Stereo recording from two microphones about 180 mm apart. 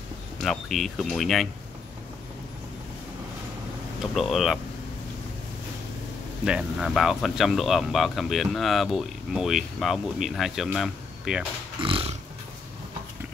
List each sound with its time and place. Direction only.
0.4 s speech: centre (ahead or behind)
4.0 s speech: centre (ahead or behind)
6.4 s speech: 5° right (ahead or behind)
11.8 s a sound: 30° right (ahead or behind)